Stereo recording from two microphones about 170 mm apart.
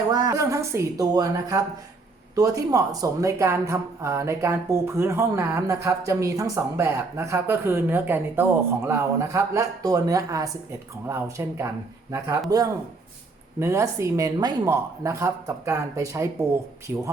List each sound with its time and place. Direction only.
0.1 s a woman's voice: 20° right (ahead or behind)